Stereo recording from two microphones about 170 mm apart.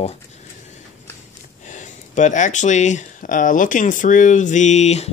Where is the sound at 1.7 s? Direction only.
45° left (ahead or behind).